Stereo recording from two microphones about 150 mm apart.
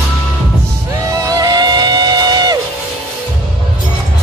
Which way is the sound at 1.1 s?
20° right (ahead or behind).